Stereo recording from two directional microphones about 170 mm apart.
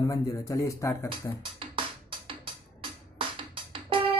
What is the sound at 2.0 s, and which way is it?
Music, 30° right (ahead or behind).